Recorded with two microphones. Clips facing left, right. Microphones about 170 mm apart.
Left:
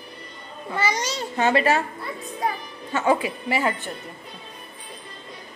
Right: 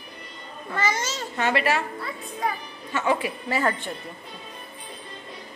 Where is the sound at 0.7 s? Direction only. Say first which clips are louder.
Left 1 dB; 15° left (ahead or behind).